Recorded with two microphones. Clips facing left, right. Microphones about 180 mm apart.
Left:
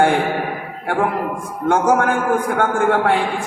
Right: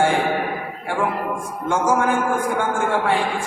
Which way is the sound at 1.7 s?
60° left (ahead or behind).